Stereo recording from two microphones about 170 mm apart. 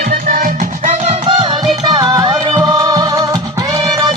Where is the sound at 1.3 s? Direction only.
30° right (ahead or behind).